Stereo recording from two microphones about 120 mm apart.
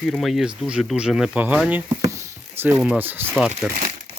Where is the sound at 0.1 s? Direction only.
Centre (ahead or behind); by 3.3 s 15° right (ahead or behind).